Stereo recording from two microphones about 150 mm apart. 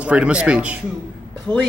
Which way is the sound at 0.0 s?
10° right (ahead or behind).